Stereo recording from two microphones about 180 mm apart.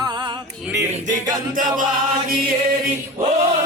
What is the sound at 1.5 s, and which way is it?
Mantra, 50° right (ahead or behind).